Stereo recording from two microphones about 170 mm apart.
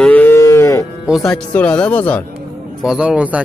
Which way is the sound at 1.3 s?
10° left (ahead or behind).